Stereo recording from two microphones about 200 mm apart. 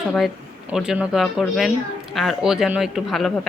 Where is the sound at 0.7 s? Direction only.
5° right (ahead or behind).